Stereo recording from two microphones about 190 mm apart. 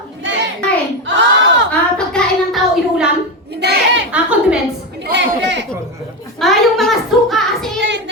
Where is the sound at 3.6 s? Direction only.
60° right (ahead or behind).